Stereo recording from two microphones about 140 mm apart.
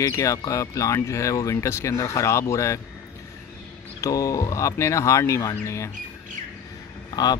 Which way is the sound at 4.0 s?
25° left (ahead or behind).